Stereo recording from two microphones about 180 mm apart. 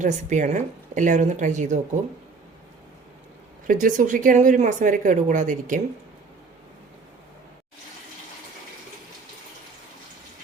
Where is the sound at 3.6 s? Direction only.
50° right (ahead or behind).